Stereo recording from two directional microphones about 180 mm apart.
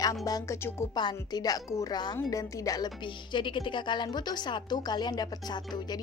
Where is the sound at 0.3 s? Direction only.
20° left (ahead or behind).